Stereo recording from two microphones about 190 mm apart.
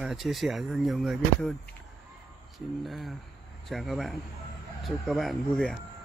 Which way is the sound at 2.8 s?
Centre (ahead or behind).